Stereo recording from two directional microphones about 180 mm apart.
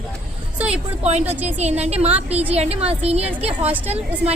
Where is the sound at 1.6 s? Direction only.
35° right (ahead or behind).